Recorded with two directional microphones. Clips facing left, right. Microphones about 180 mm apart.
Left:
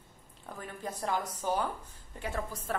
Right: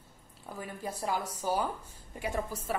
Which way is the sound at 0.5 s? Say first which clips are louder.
Right 1 dB; 10° right (ahead or behind).